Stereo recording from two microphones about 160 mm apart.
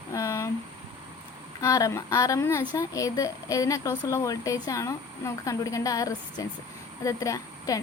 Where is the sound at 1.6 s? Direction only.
20° left (ahead or behind).